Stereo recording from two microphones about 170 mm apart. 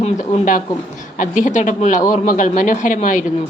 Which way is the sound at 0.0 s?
40° left (ahead or behind).